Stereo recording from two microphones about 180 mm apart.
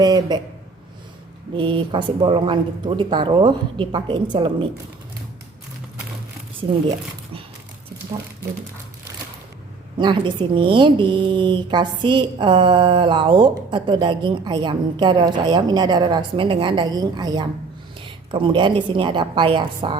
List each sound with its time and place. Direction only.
0.0 s a woman's voice: 25° right (ahead or behind)
1.5 s a woman's voice: 30° right (ahead or behind)
10.0 s a woman's voice: 25° right (ahead or behind)